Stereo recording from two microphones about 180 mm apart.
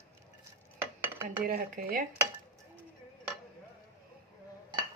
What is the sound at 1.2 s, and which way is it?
Speech, 50° right (ahead or behind).